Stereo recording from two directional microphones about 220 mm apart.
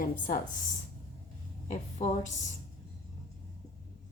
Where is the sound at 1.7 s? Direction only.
35° left (ahead or behind).